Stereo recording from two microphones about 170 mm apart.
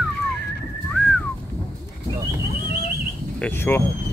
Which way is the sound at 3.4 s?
10° left (ahead or behind).